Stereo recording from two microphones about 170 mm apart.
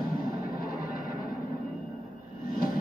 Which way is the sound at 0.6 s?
55° left (ahead or behind).